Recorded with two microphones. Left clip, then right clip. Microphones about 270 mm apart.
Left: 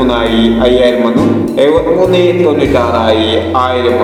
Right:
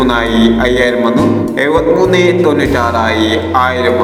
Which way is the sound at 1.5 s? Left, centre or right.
Right.